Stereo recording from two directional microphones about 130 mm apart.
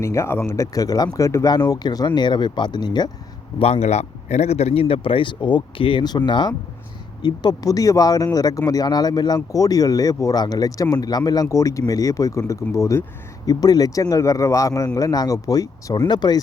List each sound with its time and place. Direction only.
0.0 s speech: 20° left (ahead or behind)
3.6 s a man's voice: 55° left (ahead or behind); by 16.4 s 35° left (ahead or behind)